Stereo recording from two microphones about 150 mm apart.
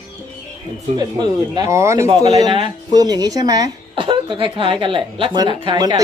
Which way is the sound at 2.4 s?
30° right (ahead or behind).